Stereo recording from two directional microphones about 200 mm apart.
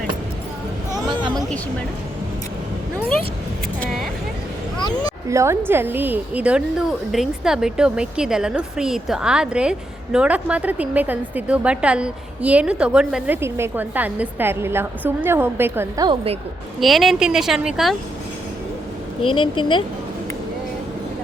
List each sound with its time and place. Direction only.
1.0 s a sound: 20° right (ahead or behind)
3.8 s speech: centre (ahead or behind)
5.3 s a woman's voice: 15° right (ahead or behind)
16.0 s a woman's voice: 30° right (ahead or behind)
16.8 s speech: centre (ahead or behind)
19.2 s a woman's voice: 25° left (ahead or behind)